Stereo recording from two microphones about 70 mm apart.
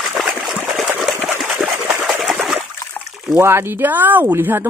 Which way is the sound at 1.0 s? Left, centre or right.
Centre.